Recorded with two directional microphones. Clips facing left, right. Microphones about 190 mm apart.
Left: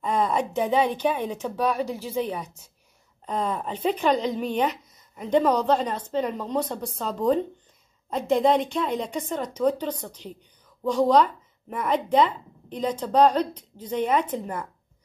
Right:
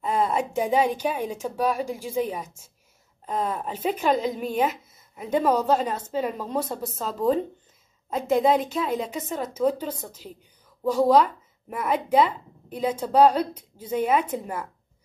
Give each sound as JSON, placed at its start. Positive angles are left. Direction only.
{"t": 0.0, "sound": "a woman's voice", "side_deg": -5}